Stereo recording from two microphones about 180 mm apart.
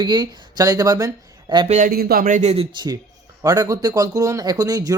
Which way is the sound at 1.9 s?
55° right (ahead or behind).